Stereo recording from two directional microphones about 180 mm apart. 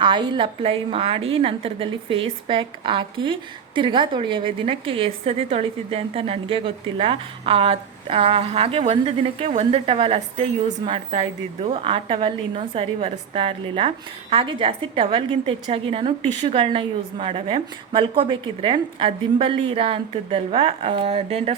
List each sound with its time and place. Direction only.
0.0 s a woman's voice: 25° right (ahead or behind)